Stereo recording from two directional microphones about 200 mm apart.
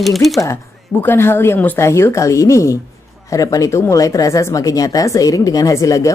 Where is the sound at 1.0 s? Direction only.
10° left (ahead or behind).